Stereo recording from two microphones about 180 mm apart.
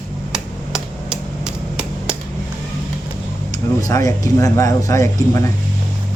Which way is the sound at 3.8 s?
20° left (ahead or behind).